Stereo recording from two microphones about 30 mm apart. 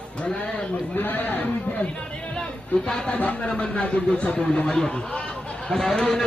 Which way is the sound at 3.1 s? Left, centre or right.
Left.